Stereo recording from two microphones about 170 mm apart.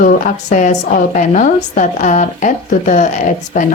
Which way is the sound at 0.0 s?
50° left (ahead or behind).